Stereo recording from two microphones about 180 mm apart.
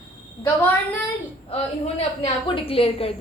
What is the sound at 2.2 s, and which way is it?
Speech, 30° left (ahead or behind).